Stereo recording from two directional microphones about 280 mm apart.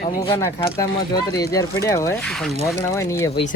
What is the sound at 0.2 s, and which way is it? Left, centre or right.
Speech, centre.